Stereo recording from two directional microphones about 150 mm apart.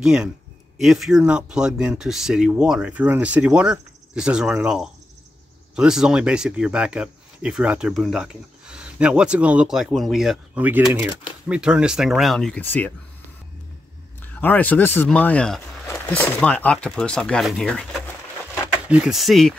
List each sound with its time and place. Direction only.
0.0 s speech: 5° right (ahead or behind); by 12.9 s 10° left (ahead or behind)
14.4 s speech: 10° left (ahead or behind)